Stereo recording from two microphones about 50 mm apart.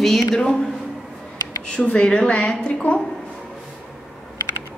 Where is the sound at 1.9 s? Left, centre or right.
Left.